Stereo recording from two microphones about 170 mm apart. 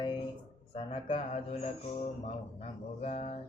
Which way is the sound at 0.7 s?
35° left (ahead or behind).